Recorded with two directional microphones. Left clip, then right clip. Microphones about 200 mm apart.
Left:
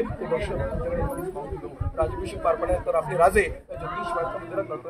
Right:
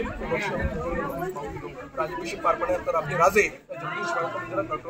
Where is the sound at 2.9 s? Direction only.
20° left (ahead or behind).